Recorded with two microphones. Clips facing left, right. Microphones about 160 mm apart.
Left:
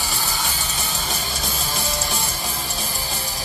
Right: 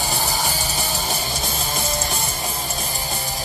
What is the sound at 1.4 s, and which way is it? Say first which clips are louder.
Music: right 2 dB; 40° right (ahead or behind).